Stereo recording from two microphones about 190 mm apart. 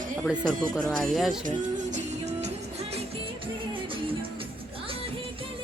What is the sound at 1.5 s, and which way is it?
Music, 40° right (ahead or behind).